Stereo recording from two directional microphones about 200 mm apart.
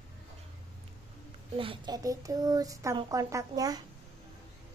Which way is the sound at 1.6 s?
25° right (ahead or behind).